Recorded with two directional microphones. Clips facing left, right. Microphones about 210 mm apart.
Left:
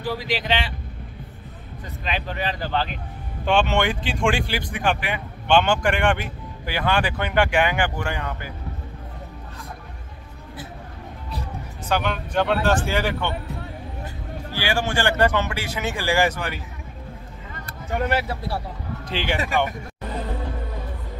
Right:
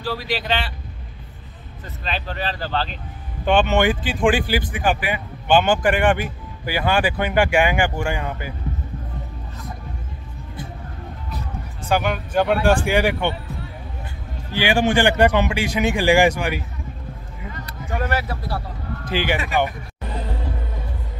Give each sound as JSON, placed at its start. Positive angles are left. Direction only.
{"t": 0.0, "sound": "speech", "side_deg": 15}
{"t": 2.0, "sound": "speech", "side_deg": 15}
{"t": 3.4, "sound": "speech", "side_deg": 0}
{"t": 11.9, "sound": "speech", "side_deg": -10}
{"t": 14.5, "sound": "speech", "side_deg": -15}
{"t": 18.0, "sound": "speech", "side_deg": 25}
{"t": 19.0, "sound": "speech", "side_deg": -5}